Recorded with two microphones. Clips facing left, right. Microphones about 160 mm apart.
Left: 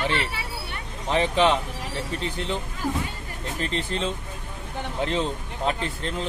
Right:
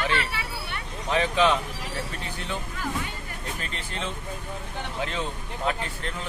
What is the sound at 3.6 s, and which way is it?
Speech, 30° left (ahead or behind).